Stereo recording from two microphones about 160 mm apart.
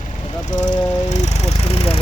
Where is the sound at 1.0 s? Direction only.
45° left (ahead or behind).